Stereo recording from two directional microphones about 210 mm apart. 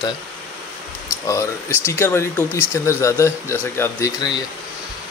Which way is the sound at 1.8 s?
10° left (ahead or behind).